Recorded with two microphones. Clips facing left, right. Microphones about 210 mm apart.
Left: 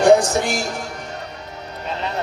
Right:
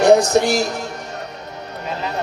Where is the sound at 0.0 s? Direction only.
40° right (ahead or behind).